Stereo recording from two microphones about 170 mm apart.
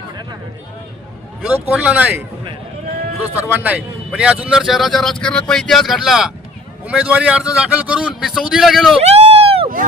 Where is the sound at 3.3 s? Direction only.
10° right (ahead or behind).